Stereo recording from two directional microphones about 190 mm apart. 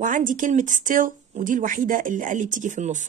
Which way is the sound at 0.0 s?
45° right (ahead or behind).